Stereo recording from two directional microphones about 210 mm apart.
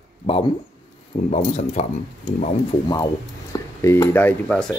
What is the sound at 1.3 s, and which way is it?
Speech, 30° left (ahead or behind).